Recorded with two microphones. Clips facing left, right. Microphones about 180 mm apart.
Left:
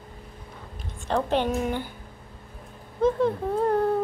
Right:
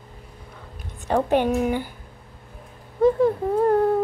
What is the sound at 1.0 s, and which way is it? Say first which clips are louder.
Speech: right 4 dB; 10° right (ahead or behind).